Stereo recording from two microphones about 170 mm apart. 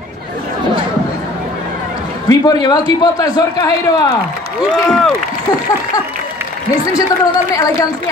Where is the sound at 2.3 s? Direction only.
20° left (ahead or behind).